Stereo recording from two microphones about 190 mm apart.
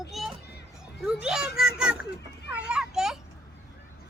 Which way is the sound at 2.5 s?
5° right (ahead or behind).